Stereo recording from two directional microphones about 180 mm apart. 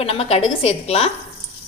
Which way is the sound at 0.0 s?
35° left (ahead or behind).